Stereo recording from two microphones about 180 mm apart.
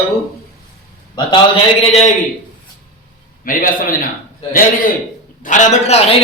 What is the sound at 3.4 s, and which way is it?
A man's voice, 50° left (ahead or behind).